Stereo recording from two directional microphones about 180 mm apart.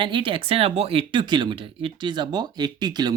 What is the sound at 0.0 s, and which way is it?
Speech, 30° right (ahead or behind).